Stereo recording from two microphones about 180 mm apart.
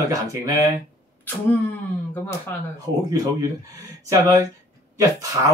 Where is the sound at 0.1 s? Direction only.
15° right (ahead or behind).